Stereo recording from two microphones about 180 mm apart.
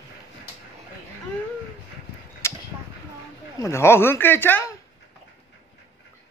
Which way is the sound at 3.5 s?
15° left (ahead or behind).